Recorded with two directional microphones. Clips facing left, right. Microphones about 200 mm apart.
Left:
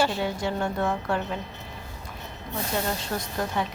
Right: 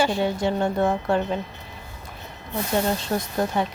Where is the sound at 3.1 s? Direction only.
30° right (ahead or behind).